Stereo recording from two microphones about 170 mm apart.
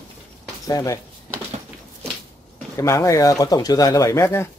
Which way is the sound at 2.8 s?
15° left (ahead or behind).